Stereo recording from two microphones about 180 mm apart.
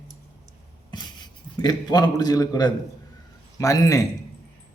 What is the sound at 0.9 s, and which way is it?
A man's voice, 25° left (ahead or behind).